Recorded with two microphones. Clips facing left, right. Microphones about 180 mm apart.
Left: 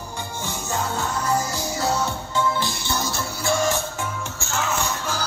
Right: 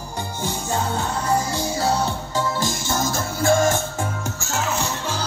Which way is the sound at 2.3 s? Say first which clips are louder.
Left 1 dB; 45° right (ahead or behind).